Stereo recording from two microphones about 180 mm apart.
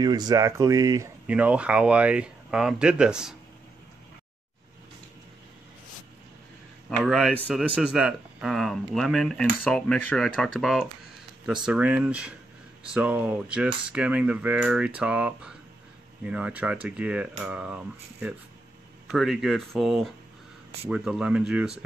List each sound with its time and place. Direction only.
0.0 s speech: 20° right (ahead or behind)
1.2 s speech: 5° right (ahead or behind)
7.0 s speech: centre (ahead or behind)